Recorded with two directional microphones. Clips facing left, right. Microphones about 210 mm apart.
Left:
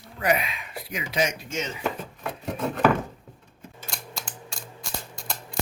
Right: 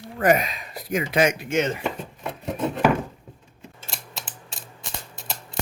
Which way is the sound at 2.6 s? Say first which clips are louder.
Right 1 dB; 5° right (ahead or behind).